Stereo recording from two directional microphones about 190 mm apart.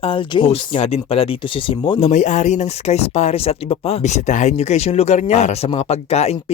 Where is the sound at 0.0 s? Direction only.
25° left (ahead or behind).